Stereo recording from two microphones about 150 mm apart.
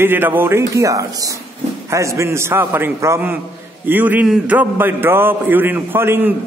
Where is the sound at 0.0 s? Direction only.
15° right (ahead or behind).